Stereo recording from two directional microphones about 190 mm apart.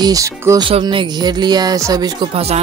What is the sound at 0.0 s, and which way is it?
Speech, 15° right (ahead or behind).